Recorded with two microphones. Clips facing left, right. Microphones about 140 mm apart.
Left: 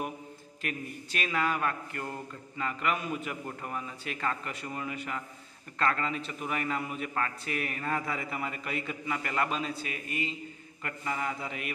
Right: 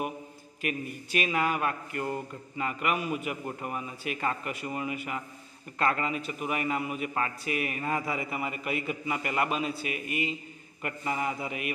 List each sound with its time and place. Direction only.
0.6 s mantra: 10° right (ahead or behind)